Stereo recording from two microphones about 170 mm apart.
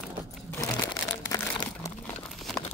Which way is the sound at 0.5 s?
20° left (ahead or behind).